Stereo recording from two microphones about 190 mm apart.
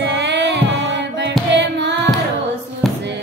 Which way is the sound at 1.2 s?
65° right (ahead or behind).